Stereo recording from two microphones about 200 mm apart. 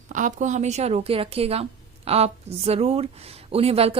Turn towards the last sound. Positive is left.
turn(degrees=-30)  # may be behind; listen again after turning